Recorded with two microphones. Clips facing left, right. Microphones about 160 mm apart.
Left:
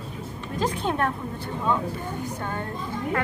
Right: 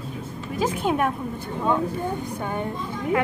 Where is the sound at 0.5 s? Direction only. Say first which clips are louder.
Right 3 dB; 10° right (ahead or behind).